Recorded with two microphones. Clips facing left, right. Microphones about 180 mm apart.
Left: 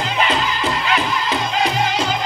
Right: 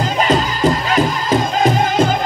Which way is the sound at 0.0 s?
40° right (ahead or behind).